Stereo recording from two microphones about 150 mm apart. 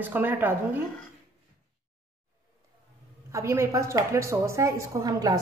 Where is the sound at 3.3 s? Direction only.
20° right (ahead or behind).